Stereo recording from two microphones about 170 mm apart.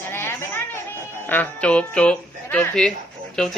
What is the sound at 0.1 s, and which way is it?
Chatter, 15° left (ahead or behind).